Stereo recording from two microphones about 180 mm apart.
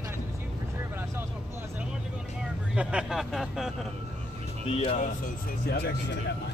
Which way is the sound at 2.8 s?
5° right (ahead or behind).